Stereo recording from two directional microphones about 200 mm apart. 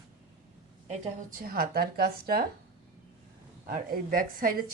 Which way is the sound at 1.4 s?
50° right (ahead or behind).